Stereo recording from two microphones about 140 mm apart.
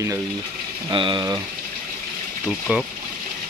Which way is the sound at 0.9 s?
35° right (ahead or behind).